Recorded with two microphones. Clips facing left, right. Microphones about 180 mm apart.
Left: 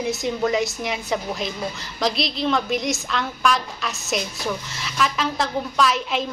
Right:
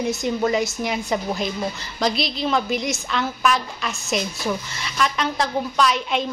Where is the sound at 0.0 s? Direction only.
Centre (ahead or behind).